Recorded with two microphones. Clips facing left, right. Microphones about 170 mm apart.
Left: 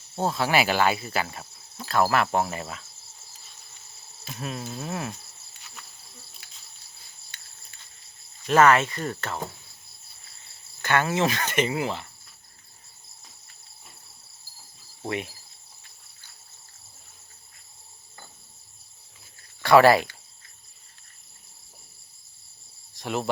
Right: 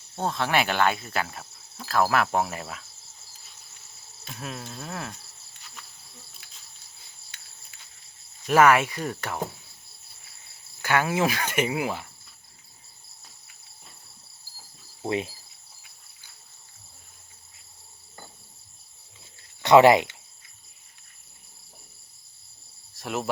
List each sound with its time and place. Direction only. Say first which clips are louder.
0.2 s speech: left 2 dB; 5° left (ahead or behind)
4.3 s speech: left 3 dB; centre (ahead or behind)
6.4 s insect: left 1 dB; centre (ahead or behind)
8.4 s speech: even; 10° right (ahead or behind)
10.8 s speech: even; 10° right (ahead or behind)
15.0 s speech: right 3 dB; 30° right (ahead or behind)
19.6 s speech: right 1 dB; 20° right (ahead or behind)
23.0 s speech: left 1 dB; centre (ahead or behind)